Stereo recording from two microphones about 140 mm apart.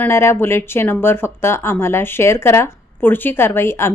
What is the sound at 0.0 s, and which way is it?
A woman's voice, 15° left (ahead or behind).